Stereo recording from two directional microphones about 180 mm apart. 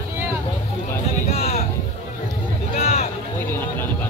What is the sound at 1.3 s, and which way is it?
Vehicle, 35° left (ahead or behind).